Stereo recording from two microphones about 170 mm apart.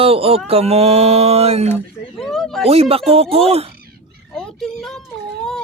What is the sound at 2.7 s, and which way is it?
Speech, 35° right (ahead or behind).